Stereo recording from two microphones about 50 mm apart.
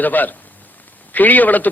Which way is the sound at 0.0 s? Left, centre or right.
Left.